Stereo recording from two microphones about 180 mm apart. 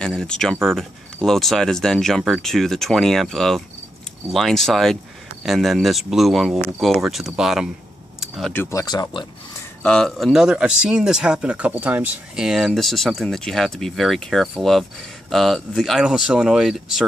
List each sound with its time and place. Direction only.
0.0 s speech: 5° left (ahead or behind)
8.2 s keys jangling: centre (ahead or behind)
8.5 s speech: 15° left (ahead or behind)
9.8 s speech: 5° left (ahead or behind)